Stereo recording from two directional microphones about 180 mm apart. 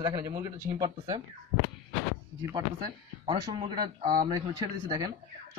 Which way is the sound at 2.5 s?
25° right (ahead or behind).